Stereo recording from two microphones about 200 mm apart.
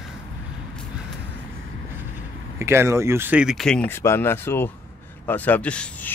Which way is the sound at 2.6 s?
15° right (ahead or behind).